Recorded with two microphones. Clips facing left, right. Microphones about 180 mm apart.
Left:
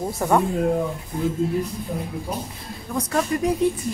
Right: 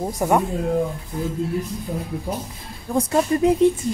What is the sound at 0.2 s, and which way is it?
Speech, 15° right (ahead or behind).